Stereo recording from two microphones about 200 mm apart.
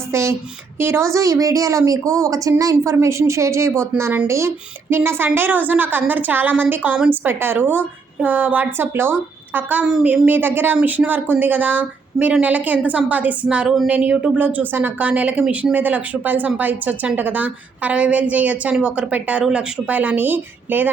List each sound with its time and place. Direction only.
0.1 s speech: 15° right (ahead or behind)